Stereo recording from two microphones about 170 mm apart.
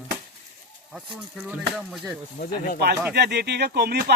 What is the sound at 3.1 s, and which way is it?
Speech, 80° right.